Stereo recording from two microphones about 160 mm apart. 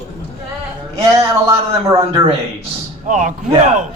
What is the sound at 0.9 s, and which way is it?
Speech, 15° right (ahead or behind).